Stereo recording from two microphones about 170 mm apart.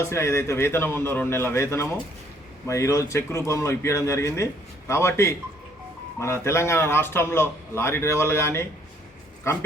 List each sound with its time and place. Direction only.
0.0 s a man's voice: 15° left (ahead or behind)